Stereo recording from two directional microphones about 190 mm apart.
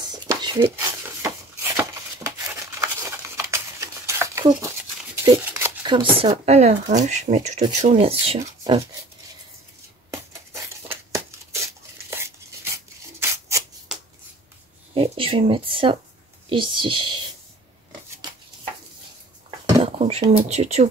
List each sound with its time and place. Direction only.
0.1 s whispering: 20° right (ahead or behind)
0.7 s a sound: 15° right (ahead or behind)
5.9 s speech: 25° right (ahead or behind)
10.1 s a sound: 15° right (ahead or behind)
12.7 s rub: 15° right (ahead or behind)
15.0 s speech: 30° right (ahead or behind)
20.0 s speech: 35° right (ahead or behind)